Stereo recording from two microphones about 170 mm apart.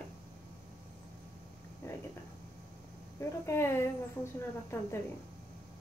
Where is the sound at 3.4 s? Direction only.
15° left (ahead or behind).